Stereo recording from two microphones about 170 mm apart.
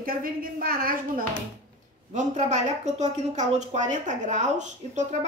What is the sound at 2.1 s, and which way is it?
A woman's voice, 45° right (ahead or behind).